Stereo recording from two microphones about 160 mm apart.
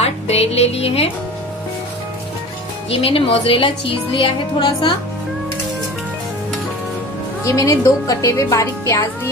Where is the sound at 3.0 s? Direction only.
35° left (ahead or behind).